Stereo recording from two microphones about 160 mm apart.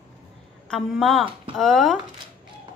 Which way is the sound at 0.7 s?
Centre (ahead or behind).